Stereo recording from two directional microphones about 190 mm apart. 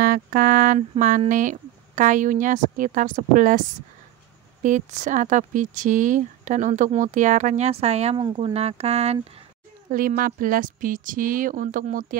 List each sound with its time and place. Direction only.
0.0 s speech: 45° right (ahead or behind)
4.6 s speech: 40° right (ahead or behind)
9.8 s speech: 45° right (ahead or behind)